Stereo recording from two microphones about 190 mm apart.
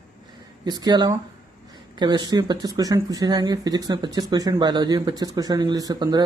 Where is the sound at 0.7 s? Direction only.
20° right (ahead or behind).